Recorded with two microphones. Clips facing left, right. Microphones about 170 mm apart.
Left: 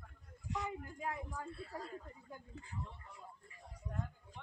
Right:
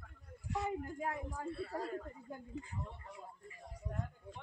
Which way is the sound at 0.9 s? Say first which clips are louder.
Right 2 dB; 35° right (ahead or behind).